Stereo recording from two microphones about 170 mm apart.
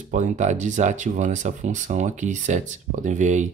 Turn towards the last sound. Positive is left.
turn(degrees=-45)  # may be behind; listen again after turning